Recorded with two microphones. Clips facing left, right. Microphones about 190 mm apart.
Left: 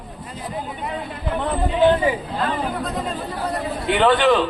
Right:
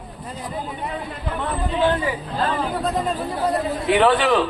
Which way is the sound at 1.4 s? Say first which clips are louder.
Left 4 dB; 15° left (ahead or behind).